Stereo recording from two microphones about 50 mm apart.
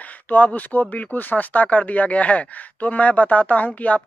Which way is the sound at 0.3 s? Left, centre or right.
Left.